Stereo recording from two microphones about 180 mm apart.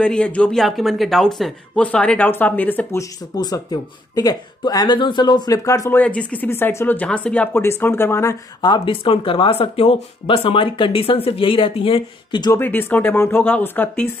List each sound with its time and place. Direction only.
0.0 s speech: 5° left (ahead or behind); by 12.5 s 25° left (ahead or behind)
12.5 s speech: 10° left (ahead or behind)